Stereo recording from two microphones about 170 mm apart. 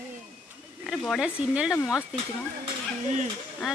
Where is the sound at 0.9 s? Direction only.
Centre (ahead or behind).